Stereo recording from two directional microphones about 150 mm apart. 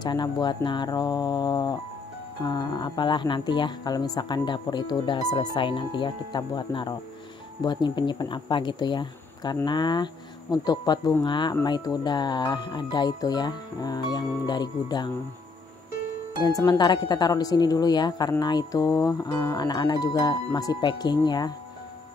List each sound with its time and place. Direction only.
0.0 s speech: 30° left (ahead or behind)
16.3 s speech: 25° left (ahead or behind)